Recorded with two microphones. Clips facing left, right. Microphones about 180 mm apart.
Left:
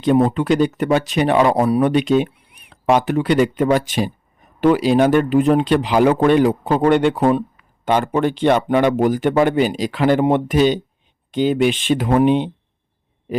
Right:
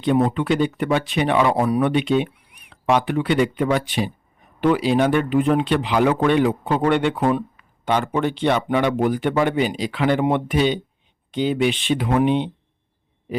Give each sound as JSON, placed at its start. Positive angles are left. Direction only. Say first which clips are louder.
{"t": 0.0, "sound": "speech", "louder": "left 3 dB", "side_deg": 35}